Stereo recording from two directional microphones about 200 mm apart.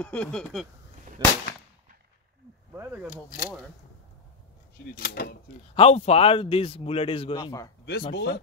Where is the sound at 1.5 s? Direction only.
50° left (ahead or behind).